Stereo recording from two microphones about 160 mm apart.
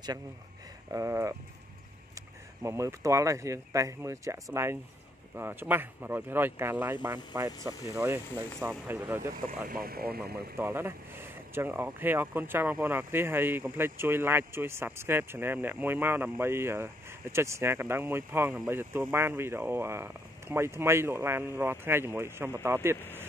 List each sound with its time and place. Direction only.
0.9 s speech: 20° right (ahead or behind)
2.6 s speech: 15° right (ahead or behind)
9.7 s speech: 70° right (ahead or behind)
10.6 s speech: 15° right (ahead or behind)